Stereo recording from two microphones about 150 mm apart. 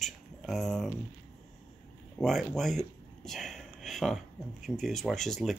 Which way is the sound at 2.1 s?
Centre (ahead or behind).